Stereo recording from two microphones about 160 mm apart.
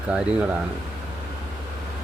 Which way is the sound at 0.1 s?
5° right (ahead or behind).